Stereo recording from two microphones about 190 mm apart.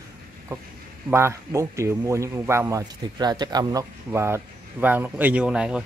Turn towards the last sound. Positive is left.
turn(degrees=-5)  # may be behind; listen again after turning